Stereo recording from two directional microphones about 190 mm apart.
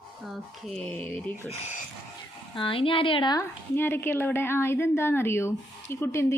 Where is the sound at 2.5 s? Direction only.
25° left (ahead or behind).